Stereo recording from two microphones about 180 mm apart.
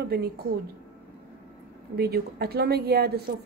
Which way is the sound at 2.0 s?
60° right (ahead or behind).